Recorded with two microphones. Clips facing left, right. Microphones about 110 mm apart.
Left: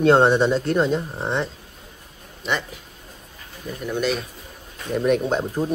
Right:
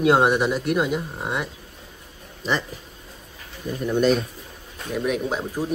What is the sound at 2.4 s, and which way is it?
Speech, 35° right (ahead or behind).